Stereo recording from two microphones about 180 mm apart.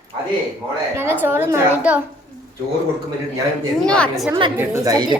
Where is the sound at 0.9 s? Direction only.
10° right (ahead or behind).